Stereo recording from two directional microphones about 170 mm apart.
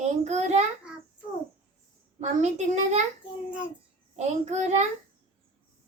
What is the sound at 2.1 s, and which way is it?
Speech, 40° right (ahead or behind).